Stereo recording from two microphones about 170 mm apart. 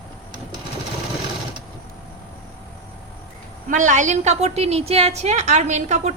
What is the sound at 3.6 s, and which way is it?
A woman's voice, 50° right (ahead or behind).